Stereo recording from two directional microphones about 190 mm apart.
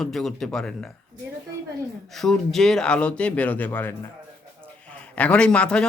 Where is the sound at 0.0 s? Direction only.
Centre (ahead or behind).